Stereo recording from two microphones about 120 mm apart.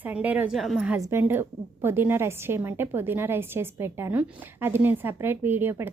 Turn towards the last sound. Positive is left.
turn(degrees=-20)  # may be behind; listen again after turning